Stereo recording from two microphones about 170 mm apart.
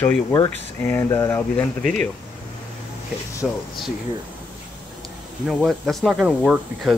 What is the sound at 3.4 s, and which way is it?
Speech, centre (ahead or behind).